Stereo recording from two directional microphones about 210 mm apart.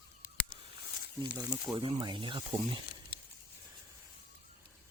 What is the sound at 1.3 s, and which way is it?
Speech, 20° right (ahead or behind).